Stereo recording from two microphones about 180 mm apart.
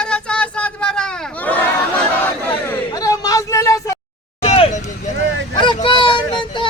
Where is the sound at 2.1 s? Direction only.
10° left (ahead or behind).